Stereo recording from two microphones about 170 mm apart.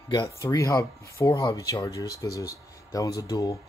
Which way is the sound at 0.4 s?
20° left (ahead or behind).